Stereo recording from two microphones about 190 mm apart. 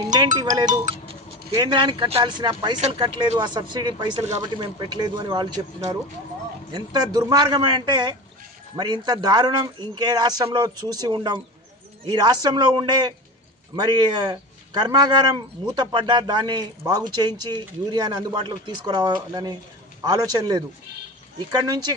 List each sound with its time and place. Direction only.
0.0 s a man's voice: 20° right (ahead or behind)
0.7 s a man's voice: 35° right (ahead or behind)
6.7 s a man's voice: 20° right (ahead or behind)